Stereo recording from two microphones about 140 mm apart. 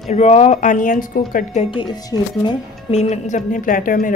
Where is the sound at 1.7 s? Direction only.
35° left (ahead or behind).